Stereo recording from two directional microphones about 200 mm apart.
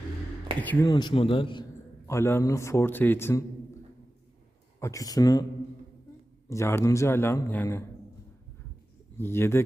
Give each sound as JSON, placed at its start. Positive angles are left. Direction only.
{"t": 0.6, "sound": "a man's voice", "side_deg": 10}
{"t": 2.0, "sound": "a man's voice", "side_deg": 10}
{"t": 4.8, "sound": "a man's voice", "side_deg": 15}
{"t": 6.5, "sound": "a man's voice", "side_deg": 15}
{"t": 9.1, "sound": "a man's voice", "side_deg": 10}